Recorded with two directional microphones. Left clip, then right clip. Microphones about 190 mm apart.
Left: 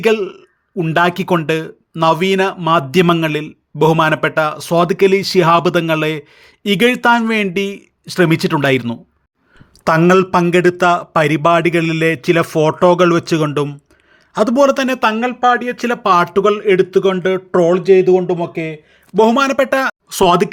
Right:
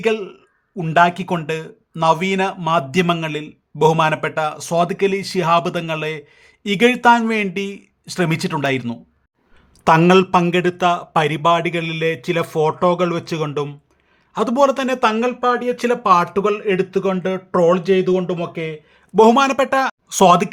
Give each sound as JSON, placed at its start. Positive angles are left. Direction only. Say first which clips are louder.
{"t": 0.0, "sound": "a man's voice", "louder": "left 5 dB", "side_deg": 25}
{"t": 10.1, "sound": "a man's voice", "louder": "left 2 dB", "side_deg": 10}
{"t": 14.3, "sound": "speech", "louder": "left 4 dB", "side_deg": 15}
{"t": 19.1, "sound": "speech", "louder": "even", "side_deg": 0}